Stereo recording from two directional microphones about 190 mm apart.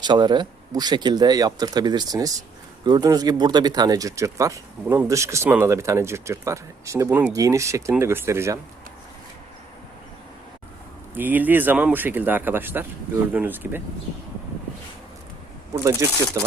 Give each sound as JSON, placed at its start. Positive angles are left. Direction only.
{"t": 0.0, "sound": "speech", "side_deg": -25}
{"t": 11.1, "sound": "speech", "side_deg": -10}
{"t": 15.7, "sound": "speech", "side_deg": -15}